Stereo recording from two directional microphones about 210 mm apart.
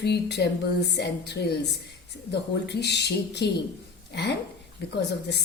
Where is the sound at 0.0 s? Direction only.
50° left (ahead or behind).